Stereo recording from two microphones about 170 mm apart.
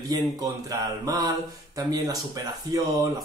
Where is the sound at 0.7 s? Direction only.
20° right (ahead or behind).